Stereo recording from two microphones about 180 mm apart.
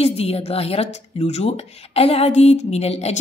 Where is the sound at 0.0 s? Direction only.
35° left (ahead or behind).